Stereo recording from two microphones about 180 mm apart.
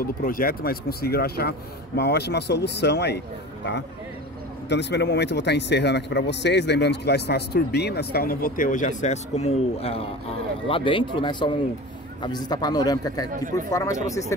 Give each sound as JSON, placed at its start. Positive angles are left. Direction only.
{"t": 0.0, "sound": "speech", "side_deg": 50}
{"t": 4.6, "sound": "a man's voice", "side_deg": 75}